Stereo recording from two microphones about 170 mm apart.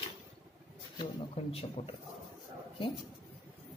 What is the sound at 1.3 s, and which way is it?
Speech, 35° left (ahead or behind).